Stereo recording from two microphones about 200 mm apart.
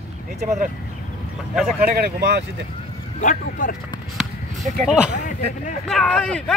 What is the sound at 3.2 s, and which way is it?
Speech, 40° left (ahead or behind).